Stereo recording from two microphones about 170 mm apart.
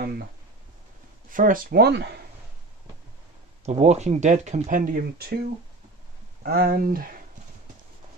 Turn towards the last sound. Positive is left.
turn(degrees=-55)  # may be behind; listen again after turning